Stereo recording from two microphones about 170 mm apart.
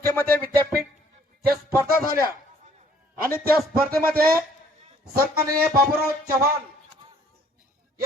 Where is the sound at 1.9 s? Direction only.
60° right (ahead or behind).